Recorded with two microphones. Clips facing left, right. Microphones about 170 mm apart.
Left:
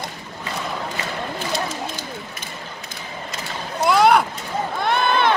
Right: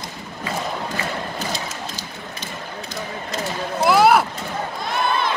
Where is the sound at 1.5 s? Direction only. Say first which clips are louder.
Left 4 dB; 55° left (ahead or behind).